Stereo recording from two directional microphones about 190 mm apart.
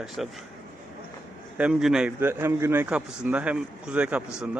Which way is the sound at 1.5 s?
5° right (ahead or behind).